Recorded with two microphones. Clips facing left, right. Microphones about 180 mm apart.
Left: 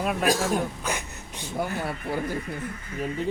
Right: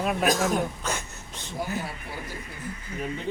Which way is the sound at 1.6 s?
55° left (ahead or behind).